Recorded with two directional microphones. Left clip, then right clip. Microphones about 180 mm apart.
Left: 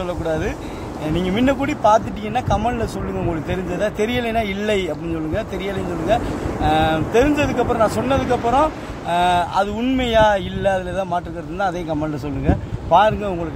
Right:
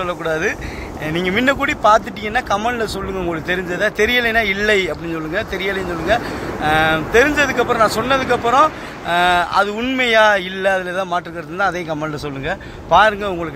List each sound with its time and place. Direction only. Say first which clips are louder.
0.0 s speech: right 3 dB; centre (ahead or behind)